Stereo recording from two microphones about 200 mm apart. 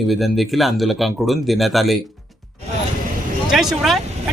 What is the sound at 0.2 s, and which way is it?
Speech, centre (ahead or behind).